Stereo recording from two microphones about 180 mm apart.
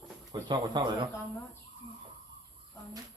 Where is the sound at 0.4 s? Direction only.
25° right (ahead or behind).